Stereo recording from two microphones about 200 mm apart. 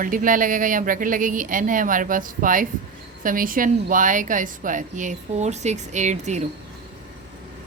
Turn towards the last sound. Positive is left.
turn(degrees=-35)  # may be behind; listen again after turning